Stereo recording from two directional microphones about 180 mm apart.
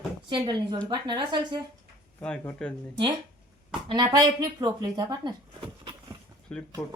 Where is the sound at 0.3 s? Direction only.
25° right (ahead or behind).